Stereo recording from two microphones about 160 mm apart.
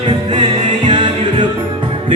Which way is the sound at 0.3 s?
30° right (ahead or behind).